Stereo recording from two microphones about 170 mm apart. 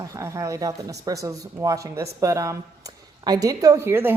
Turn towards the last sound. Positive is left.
turn(degrees=-15)  # may be behind; listen again after turning